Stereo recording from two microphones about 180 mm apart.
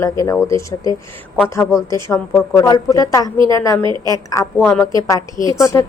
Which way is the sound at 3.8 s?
25° right (ahead or behind).